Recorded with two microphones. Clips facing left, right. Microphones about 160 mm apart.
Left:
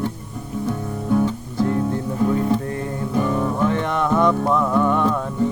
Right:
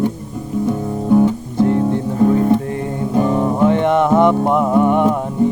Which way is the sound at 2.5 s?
20° right (ahead or behind).